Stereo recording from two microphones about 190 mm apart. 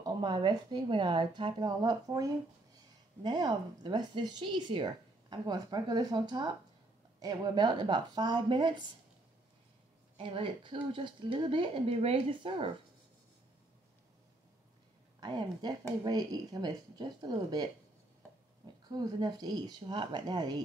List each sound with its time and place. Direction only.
0.0 s speech: 25° right (ahead or behind)
10.1 s speech: 25° right (ahead or behind)
15.1 s speech: 20° right (ahead or behind)
18.9 s speech: 20° right (ahead or behind)